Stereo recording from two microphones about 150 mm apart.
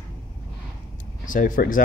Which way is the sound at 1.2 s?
65° left (ahead or behind).